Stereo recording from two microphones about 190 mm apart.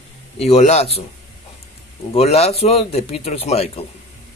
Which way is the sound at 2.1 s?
35° left (ahead or behind).